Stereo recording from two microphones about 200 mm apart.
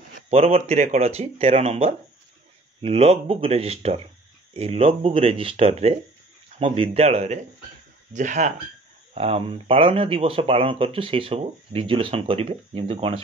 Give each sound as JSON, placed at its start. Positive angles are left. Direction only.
{"t": 0.3, "sound": "speech", "side_deg": -30}